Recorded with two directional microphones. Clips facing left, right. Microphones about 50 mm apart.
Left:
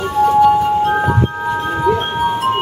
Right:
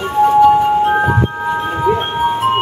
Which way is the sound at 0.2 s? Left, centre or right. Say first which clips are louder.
Right 2 dB; centre.